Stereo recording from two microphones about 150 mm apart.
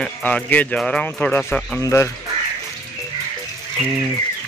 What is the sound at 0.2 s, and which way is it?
Speech, 10° left (ahead or behind).